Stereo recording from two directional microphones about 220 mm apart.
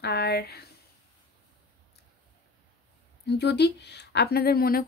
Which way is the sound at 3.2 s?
50° left (ahead or behind).